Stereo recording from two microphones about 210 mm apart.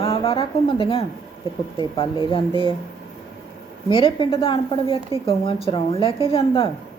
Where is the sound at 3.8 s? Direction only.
25° left (ahead or behind).